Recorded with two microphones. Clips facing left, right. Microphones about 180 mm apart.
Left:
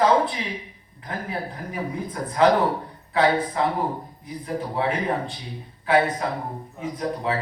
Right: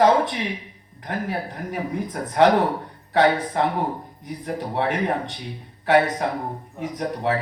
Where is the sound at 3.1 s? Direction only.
65° right (ahead or behind).